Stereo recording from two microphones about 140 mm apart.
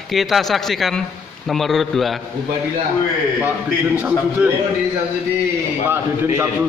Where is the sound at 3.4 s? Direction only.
10° right (ahead or behind).